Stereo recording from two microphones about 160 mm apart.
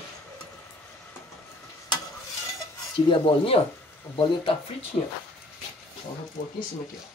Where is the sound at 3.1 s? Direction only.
35° left (ahead or behind).